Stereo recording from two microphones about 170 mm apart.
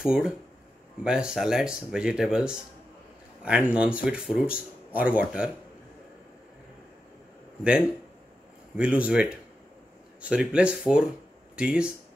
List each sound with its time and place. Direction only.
0.0 s speech: 5° right (ahead or behind)
8.7 s speech: 5° right (ahead or behind)